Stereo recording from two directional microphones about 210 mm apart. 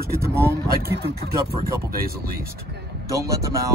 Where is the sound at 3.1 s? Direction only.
15° right (ahead or behind).